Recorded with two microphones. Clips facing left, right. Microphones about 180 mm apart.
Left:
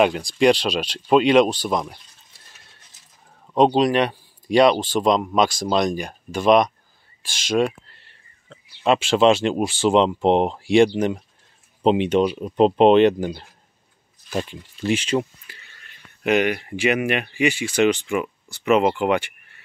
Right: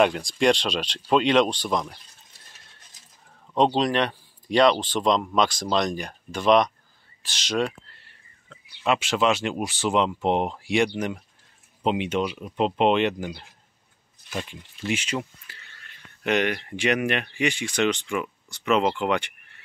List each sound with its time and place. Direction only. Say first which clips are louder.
0.0 s speech: left 3 dB; 5° left (ahead or behind)
3.5 s speech: left 5 dB; 10° left (ahead or behind)
8.5 s speech: left 5 dB; 30° left (ahead or behind)
15.5 s a sound: left 2 dB; 15° left (ahead or behind)
16.2 s speech: left 4 dB; 10° left (ahead or behind)